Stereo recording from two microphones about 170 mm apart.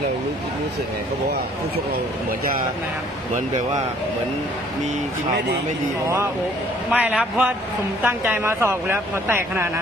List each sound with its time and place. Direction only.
6.9 s speech: 10° right (ahead or behind)